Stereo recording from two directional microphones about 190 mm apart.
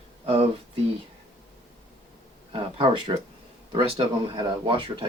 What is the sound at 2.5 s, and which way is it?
Speech, 25° right (ahead or behind).